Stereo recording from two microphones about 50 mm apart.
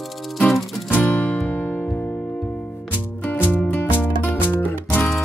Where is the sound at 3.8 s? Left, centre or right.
Left.